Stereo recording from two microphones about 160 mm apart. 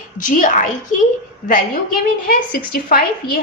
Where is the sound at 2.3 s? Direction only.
65° left (ahead or behind).